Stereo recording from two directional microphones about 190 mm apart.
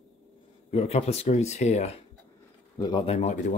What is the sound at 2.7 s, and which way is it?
Speech, 25° left (ahead or behind).